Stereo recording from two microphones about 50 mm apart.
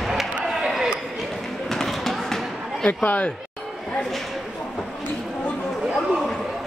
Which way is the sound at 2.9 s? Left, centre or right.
Left.